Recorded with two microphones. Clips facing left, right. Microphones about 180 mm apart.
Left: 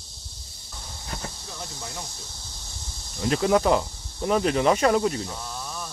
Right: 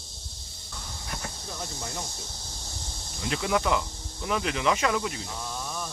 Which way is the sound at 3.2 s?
40° left (ahead or behind).